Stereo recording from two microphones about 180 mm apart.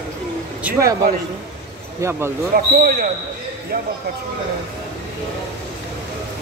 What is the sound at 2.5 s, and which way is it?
Speech, 55° right (ahead or behind).